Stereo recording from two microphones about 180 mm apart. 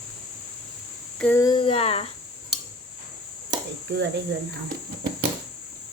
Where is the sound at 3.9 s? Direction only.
70° right (ahead or behind).